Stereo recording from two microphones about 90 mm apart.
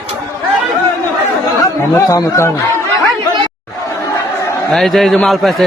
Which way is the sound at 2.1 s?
35° left (ahead or behind).